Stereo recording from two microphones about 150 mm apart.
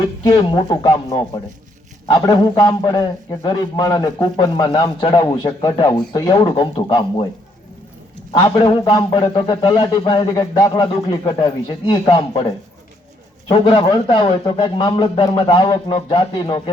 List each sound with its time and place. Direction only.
0.2 s speech: 25° left (ahead or behind)
8.3 s speech: 30° left (ahead or behind)